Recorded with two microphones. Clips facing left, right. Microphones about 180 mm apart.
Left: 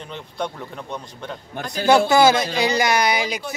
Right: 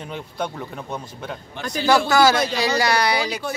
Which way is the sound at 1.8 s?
20° left (ahead or behind).